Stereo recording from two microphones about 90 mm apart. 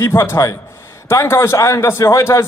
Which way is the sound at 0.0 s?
30° left (ahead or behind).